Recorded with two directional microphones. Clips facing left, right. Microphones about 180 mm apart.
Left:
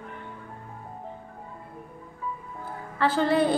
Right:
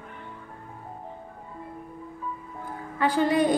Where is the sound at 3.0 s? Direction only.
15° right (ahead or behind).